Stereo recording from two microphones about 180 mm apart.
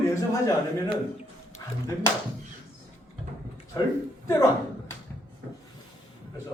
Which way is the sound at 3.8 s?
20° left (ahead or behind).